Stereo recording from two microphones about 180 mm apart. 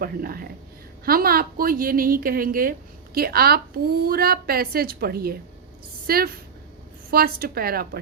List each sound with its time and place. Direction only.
0.0 s a woman's voice: 55° right (ahead or behind)